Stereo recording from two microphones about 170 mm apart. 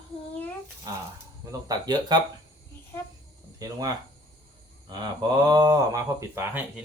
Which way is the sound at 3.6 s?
20° right (ahead or behind).